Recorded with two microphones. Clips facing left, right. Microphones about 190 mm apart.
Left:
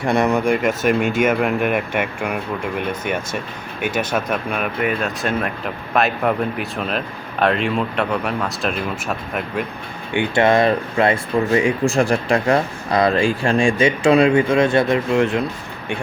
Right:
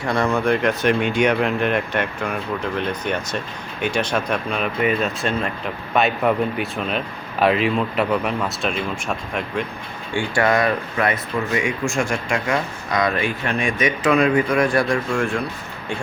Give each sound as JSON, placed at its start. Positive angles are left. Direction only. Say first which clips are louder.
{"t": 0.0, "sound": "speech", "louder": "left 3 dB", "side_deg": 20}
{"t": 10.2, "sound": "speech", "louder": "left 4 dB", "side_deg": 25}